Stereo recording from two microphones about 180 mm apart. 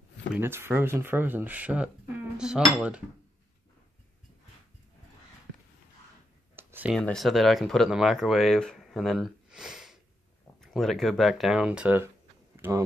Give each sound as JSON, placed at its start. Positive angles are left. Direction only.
{"t": 0.3, "sound": "speech", "side_deg": -10}
{"t": 6.5, "sound": "a sound", "side_deg": -10}
{"t": 7.0, "sound": "speech", "side_deg": 5}